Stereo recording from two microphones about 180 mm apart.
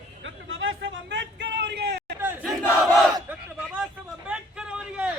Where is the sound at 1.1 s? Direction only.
75° right (ahead or behind).